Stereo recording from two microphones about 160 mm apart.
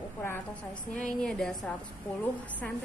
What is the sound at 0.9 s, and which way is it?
Speech, 5° left (ahead or behind).